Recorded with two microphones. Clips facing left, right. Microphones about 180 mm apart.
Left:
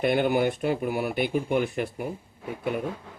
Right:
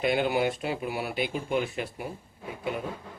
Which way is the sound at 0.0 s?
55° left (ahead or behind).